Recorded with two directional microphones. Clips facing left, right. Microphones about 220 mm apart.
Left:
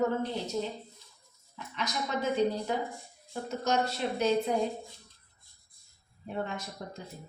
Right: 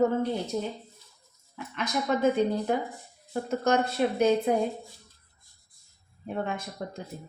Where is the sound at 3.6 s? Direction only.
55° right (ahead or behind).